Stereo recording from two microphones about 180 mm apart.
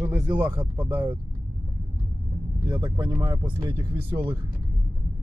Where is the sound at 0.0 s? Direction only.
15° right (ahead or behind).